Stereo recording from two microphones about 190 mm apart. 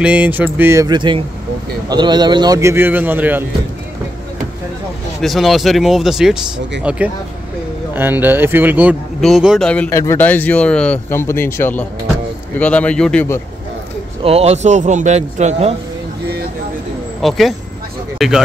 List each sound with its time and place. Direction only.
0.0 s a man's voice: 10° right (ahead or behind)
5.2 s a man's voice: centre (ahead or behind)
14.2 s a man's voice: 35° right (ahead or behind)
17.2 s speech: centre (ahead or behind)